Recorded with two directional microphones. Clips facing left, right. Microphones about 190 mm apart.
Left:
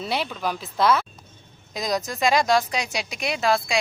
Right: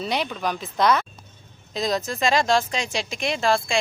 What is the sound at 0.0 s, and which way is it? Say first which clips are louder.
Speech: right 1 dB; 5° left (ahead or behind).